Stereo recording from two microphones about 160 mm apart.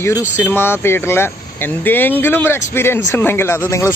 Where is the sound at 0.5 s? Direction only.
15° left (ahead or behind).